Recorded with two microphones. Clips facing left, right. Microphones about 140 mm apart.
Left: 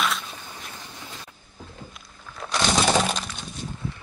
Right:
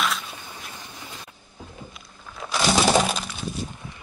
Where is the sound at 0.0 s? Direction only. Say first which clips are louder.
Even; centre (ahead or behind).